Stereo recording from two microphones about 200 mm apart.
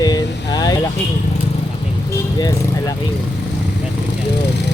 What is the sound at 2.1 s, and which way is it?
Speech, 15° left (ahead or behind).